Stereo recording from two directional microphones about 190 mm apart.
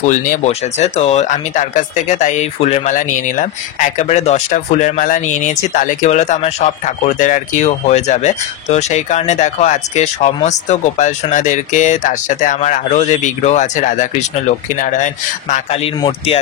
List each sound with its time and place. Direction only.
0.0 s speech: 40° left (ahead or behind)